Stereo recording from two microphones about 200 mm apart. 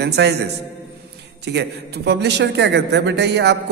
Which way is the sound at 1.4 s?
55° right (ahead or behind).